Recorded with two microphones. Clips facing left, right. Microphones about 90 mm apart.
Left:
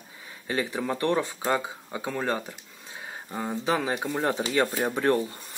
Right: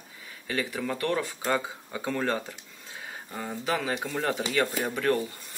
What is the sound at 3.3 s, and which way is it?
Speech, 20° left (ahead or behind).